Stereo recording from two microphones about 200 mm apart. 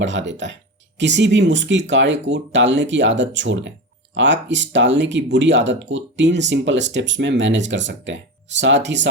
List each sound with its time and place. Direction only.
0.0 s speech: 65° right (ahead or behind)